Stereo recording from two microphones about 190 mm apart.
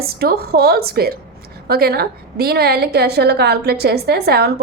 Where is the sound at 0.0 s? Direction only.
55° right (ahead or behind).